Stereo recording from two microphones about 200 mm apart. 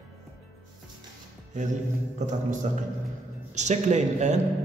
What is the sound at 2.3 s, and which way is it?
A man's voice, 40° right (ahead or behind).